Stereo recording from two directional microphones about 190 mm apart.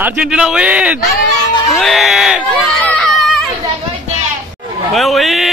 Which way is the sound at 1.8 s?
Centre (ahead or behind).